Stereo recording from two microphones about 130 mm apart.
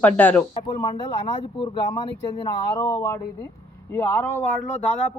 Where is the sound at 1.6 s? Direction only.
40° left (ahead or behind).